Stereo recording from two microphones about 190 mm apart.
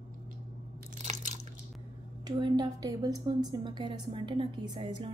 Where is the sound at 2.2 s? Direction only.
20° right (ahead or behind).